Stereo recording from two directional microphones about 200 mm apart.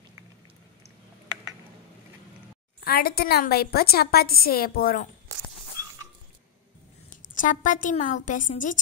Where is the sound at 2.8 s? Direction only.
50° left (ahead or behind).